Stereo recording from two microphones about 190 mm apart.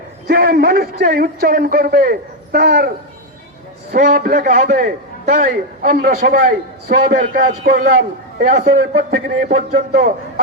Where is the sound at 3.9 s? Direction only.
45° right (ahead or behind).